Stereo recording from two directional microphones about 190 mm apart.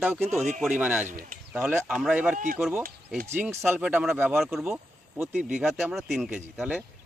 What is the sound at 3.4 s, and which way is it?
Speech, 10° right (ahead or behind).